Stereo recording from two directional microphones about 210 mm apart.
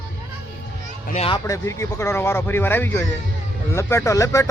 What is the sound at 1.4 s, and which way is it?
Speech, 15° left (ahead or behind).